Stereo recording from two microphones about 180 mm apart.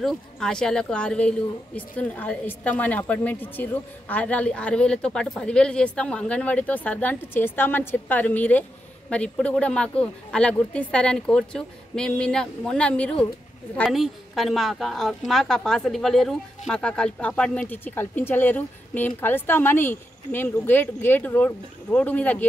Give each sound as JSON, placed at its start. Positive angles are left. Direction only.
{"t": 0.0, "sound": "a woman's voice", "side_deg": 5}